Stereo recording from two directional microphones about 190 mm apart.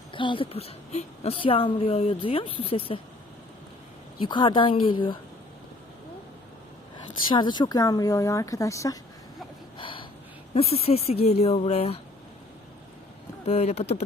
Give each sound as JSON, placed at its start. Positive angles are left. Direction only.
{"t": 0.1, "sound": "a woman's voice", "side_deg": 25}
{"t": 4.2, "sound": "a woman's voice", "side_deg": 25}
{"t": 7.3, "sound": "speech", "side_deg": 25}
{"t": 9.7, "sound": "snort", "side_deg": 25}
{"t": 10.5, "sound": "speech", "side_deg": 30}
{"t": 13.4, "sound": "speech", "side_deg": 35}